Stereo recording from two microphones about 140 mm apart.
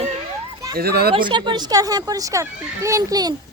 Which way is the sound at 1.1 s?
35° right (ahead or behind).